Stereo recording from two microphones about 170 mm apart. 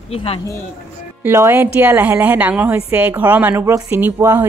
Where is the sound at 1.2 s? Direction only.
15° right (ahead or behind).